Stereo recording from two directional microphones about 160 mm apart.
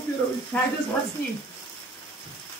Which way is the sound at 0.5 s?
10° left (ahead or behind).